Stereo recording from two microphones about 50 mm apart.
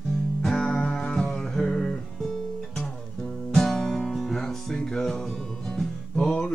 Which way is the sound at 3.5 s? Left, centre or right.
Centre.